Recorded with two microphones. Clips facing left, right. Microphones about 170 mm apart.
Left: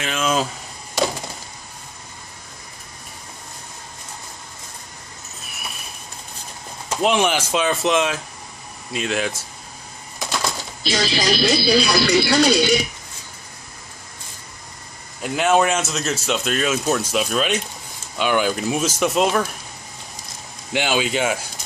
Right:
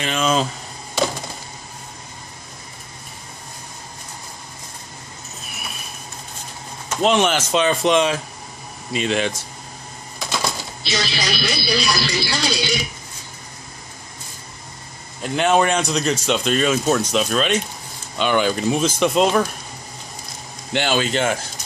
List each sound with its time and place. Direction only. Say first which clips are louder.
0.0 s speech: right 2 dB; 5° left (ahead or behind)
7.0 s speech: right 1 dB; 10° left (ahead or behind)
10.9 s speech: left 4 dB; 45° left (ahead or behind)
15.2 s speech: even; 5° left (ahead or behind)
20.7 s speech: right 1 dB; 10° left (ahead or behind)